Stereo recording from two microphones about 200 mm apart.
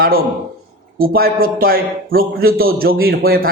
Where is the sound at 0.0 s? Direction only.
45° right (ahead or behind).